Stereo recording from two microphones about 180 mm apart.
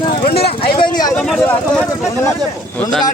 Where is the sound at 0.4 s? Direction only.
30° left (ahead or behind).